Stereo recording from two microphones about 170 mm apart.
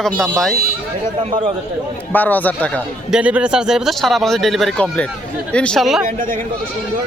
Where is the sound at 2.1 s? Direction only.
10° left (ahead or behind).